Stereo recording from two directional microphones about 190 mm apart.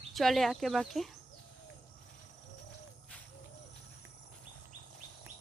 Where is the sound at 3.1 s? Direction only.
5° left (ahead or behind).